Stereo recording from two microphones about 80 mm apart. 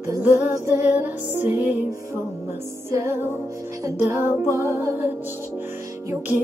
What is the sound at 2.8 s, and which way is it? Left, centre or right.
Music, right.